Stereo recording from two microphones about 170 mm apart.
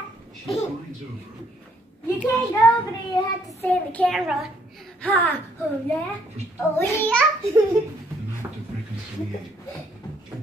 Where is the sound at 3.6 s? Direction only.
10° left (ahead or behind).